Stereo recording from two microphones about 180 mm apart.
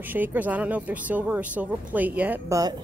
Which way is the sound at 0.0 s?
10° right (ahead or behind).